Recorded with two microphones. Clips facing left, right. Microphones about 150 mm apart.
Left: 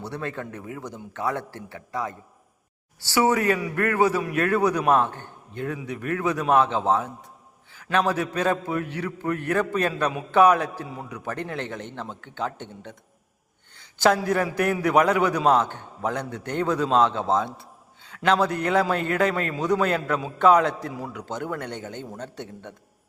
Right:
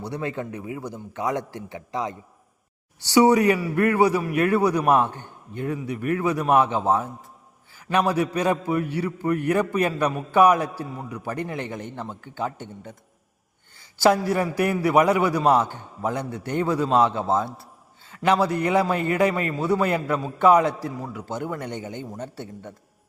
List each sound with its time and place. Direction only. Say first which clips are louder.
0.0 s a man's voice: right 3 dB; 15° right (ahead or behind)
13.7 s a sound: right 2 dB; 10° right (ahead or behind)
14.5 s a man's voice: right 2 dB; 10° right (ahead or behind)